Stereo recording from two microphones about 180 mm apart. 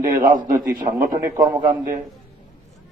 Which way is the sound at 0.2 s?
50° right (ahead or behind).